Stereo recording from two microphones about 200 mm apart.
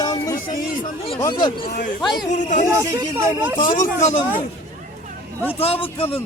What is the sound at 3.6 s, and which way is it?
Speech, 40° left (ahead or behind).